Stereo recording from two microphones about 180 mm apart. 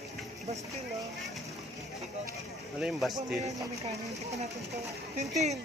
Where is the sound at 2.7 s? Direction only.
5° right (ahead or behind).